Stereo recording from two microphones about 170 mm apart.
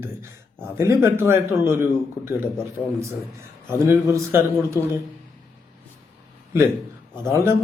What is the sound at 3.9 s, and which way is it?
Speech, 15° right (ahead or behind).